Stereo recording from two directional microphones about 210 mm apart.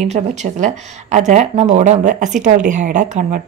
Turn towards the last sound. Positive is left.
turn(degrees=-35)  # may be behind; listen again after turning